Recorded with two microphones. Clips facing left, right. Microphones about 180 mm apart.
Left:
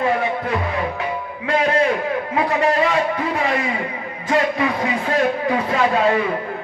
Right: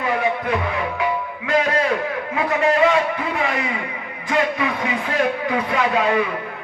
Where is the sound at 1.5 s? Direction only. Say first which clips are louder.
Left 2 dB; 30° left (ahead or behind).